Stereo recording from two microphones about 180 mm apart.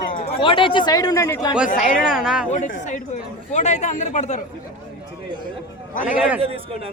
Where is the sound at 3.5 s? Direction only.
40° left (ahead or behind).